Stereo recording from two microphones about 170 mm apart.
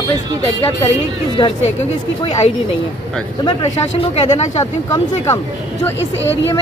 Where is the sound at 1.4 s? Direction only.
25° left (ahead or behind).